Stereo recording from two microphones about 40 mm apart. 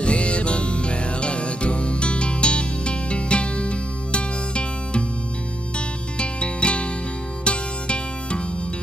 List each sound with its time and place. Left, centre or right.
0.0 s music: left
6.1 s music: left